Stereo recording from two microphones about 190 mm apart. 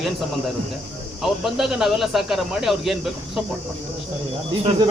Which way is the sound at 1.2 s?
Centre (ahead or behind).